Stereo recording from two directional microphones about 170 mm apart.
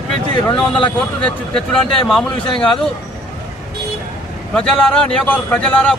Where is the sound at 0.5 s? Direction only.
30° left (ahead or behind).